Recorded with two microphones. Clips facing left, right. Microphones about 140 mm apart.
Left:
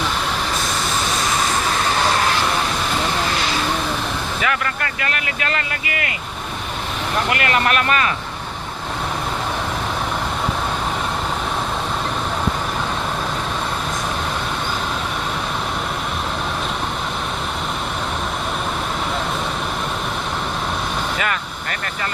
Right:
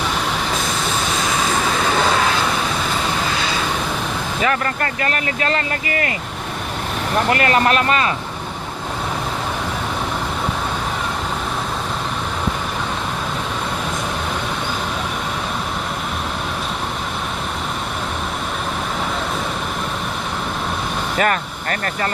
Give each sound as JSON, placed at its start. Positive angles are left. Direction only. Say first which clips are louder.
{"t": 4.4, "sound": "speech", "louder": "right 4 dB", "side_deg": -35}
{"t": 7.3, "sound": "speech", "louder": "right 4 dB", "side_deg": -35}
{"t": 21.2, "sound": "speech", "louder": "right 5 dB", "side_deg": -40}